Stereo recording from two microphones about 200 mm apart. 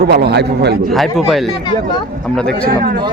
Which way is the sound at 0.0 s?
55° right (ahead or behind).